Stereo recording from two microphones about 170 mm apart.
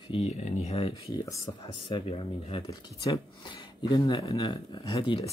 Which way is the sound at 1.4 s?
25° left (ahead or behind).